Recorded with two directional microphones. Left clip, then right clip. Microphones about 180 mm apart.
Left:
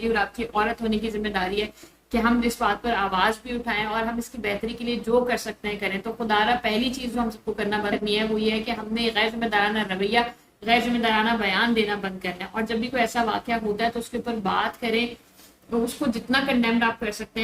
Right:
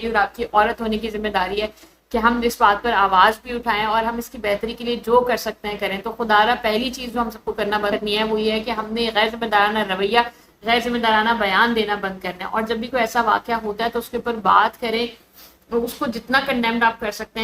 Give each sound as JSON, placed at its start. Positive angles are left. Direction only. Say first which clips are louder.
{"t": 0.1, "sound": "a woman's voice", "louder": "right 8 dB", "side_deg": 15}
{"t": 16.0, "sound": "a woman's voice", "louder": "right 4 dB", "side_deg": 15}